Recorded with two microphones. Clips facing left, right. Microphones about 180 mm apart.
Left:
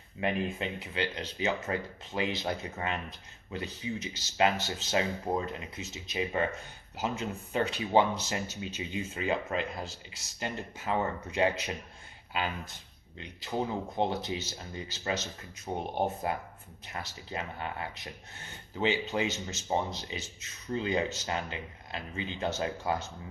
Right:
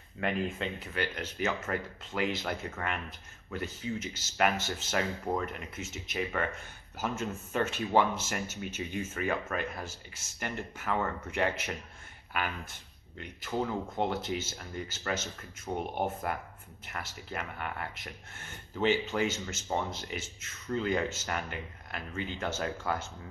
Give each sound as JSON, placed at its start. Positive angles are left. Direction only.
{"t": 0.2, "sound": "speech", "side_deg": 20}
{"t": 13.2, "sound": "speech", "side_deg": 20}
{"t": 13.8, "sound": "speech", "side_deg": 30}